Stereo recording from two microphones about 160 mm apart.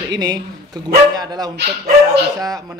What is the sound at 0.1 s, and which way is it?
Speech, 25° right (ahead or behind).